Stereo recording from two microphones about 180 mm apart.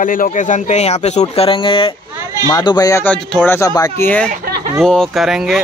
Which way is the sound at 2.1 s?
15° right (ahead or behind).